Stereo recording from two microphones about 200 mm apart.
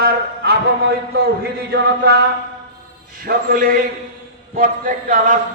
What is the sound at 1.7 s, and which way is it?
Music, 55° right (ahead or behind).